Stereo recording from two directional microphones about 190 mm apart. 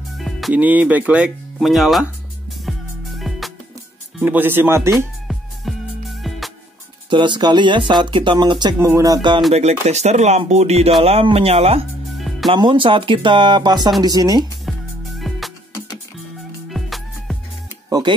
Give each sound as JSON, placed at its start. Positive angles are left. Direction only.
{"t": 0.2, "sound": "speech", "side_deg": 0}
{"t": 2.6, "sound": "music", "side_deg": 0}
{"t": 4.2, "sound": "speech", "side_deg": -10}
{"t": 4.9, "sound": "music", "side_deg": 0}
{"t": 7.1, "sound": "speech", "side_deg": -25}
{"t": 9.5, "sound": "speech", "side_deg": -35}
{"t": 12.2, "sound": "music", "side_deg": 0}
{"t": 12.4, "sound": "speech", "side_deg": -25}
{"t": 14.7, "sound": "music", "side_deg": 0}
{"t": 16.7, "sound": "music", "side_deg": 0}
{"t": 17.8, "sound": "speech", "side_deg": -20}